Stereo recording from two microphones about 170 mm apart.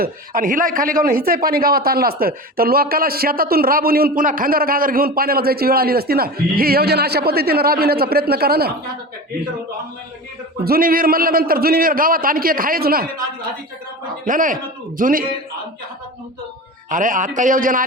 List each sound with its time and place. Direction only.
0.0 s speech: 55° right (ahead or behind)
10.6 s speech: 60° right (ahead or behind)
14.3 s a man's voice: 50° right (ahead or behind)
16.9 s a man's voice: 50° right (ahead or behind)